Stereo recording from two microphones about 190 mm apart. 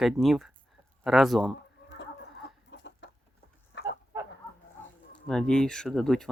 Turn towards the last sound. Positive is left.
turn(degrees=0)  # may be behind; listen again after turning